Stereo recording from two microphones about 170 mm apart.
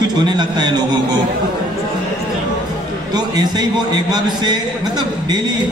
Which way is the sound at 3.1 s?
25° right (ahead or behind).